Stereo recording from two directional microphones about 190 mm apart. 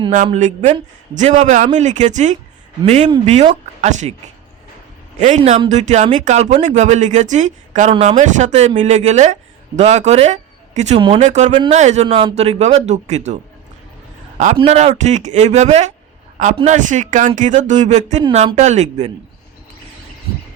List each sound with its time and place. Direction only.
0.3 s speech: 40° right (ahead or behind)
5.5 s speech: 35° right (ahead or behind)
14.5 s speech: 30° right (ahead or behind)